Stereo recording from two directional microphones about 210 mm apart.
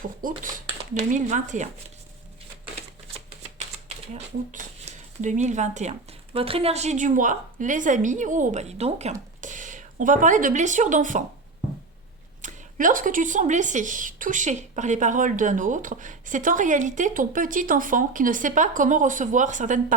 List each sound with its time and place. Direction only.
0.2 s speech: 40° right (ahead or behind)
4.1 s speech: 35° right (ahead or behind)
12.4 s speech: 35° right (ahead or behind)